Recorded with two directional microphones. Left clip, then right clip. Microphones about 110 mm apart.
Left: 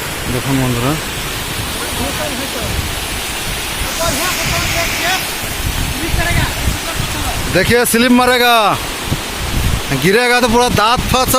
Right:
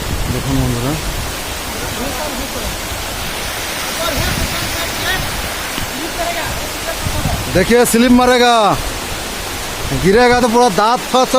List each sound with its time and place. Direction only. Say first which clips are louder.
7.5 s speech: right 1 dB; centre (ahead or behind)
10.1 s speech: right 1 dB; 10° left (ahead or behind)